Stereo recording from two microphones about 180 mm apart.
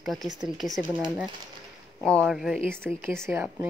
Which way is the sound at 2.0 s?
5° left (ahead or behind).